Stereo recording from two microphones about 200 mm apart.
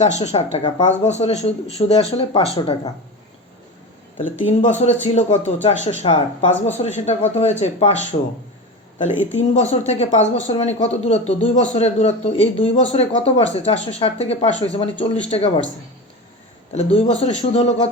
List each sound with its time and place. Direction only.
0.0 s speech: 35° left (ahead or behind)
4.2 s speech: 35° left (ahead or behind)
16.7 s speech: 30° left (ahead or behind)